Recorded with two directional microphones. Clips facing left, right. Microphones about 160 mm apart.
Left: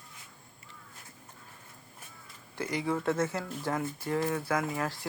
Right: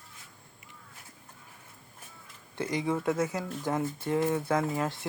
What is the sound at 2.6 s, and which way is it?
Speech, 20° right (ahead or behind).